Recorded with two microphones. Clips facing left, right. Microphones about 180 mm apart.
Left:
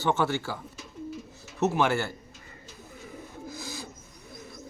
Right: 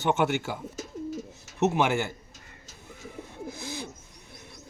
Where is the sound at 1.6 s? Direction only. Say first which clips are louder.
Right 1 dB; 15° right (ahead or behind).